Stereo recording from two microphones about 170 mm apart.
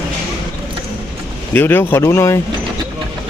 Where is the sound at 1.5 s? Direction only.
10° left (ahead or behind).